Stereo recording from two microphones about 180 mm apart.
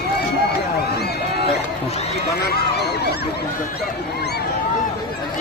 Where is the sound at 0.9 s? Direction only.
65° left (ahead or behind).